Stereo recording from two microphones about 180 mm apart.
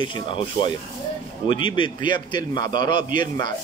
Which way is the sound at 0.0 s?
25° left (ahead or behind).